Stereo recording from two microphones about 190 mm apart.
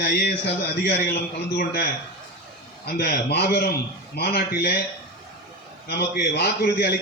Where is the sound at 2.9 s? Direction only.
55° left (ahead or behind).